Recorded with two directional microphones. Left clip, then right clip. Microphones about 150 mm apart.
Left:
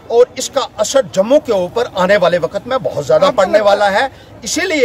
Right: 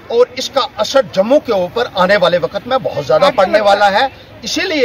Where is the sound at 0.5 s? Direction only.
45° left (ahead or behind).